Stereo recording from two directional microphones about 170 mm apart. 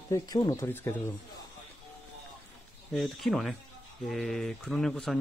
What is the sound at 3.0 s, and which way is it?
Speech, centre (ahead or behind).